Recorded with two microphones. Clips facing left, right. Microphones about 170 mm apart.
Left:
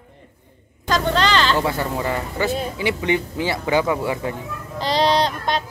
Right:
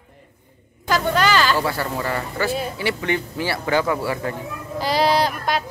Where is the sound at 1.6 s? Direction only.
20° left (ahead or behind).